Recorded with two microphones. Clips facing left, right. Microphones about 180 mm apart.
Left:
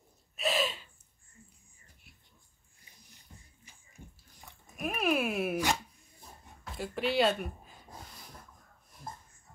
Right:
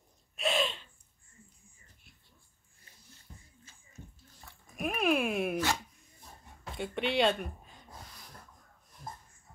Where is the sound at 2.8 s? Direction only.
15° left (ahead or behind).